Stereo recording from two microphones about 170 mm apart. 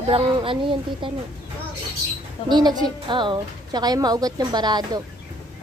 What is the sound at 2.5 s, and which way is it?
A woman's voice, 25° right (ahead or behind).